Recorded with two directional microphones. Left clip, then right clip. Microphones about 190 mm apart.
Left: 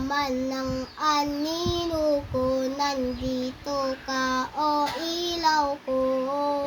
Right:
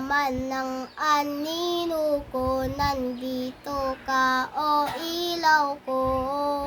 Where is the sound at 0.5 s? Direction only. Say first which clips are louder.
Right 1 dB; 35° right (ahead or behind).